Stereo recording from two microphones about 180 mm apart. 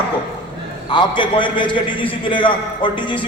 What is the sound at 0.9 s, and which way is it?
A man's voice, 25° left (ahead or behind).